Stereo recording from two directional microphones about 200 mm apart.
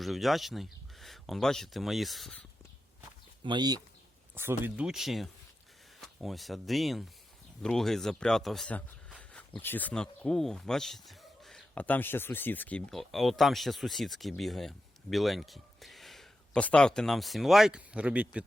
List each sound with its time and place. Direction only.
0.0 s speech: centre (ahead or behind)
3.4 s speech: 20° right (ahead or behind)
4.4 s speech: 10° right (ahead or behind)